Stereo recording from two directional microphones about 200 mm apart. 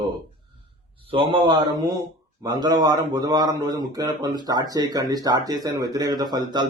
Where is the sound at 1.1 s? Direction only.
25° right (ahead or behind).